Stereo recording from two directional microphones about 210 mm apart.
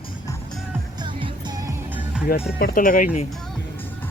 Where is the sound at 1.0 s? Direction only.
25° right (ahead or behind).